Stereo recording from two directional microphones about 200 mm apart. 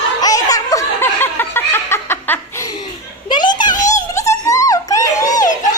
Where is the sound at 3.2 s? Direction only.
20° left (ahead or behind).